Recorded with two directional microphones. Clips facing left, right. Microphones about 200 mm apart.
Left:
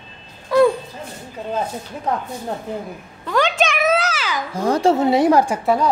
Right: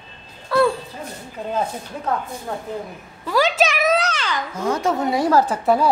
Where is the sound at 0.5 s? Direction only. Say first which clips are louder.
Left 4 dB; 15° left (ahead or behind).